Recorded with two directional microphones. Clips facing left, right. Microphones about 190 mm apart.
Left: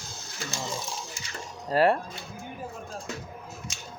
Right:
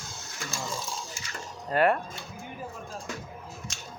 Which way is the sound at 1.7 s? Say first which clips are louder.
Left 2 dB; 30° left (ahead or behind).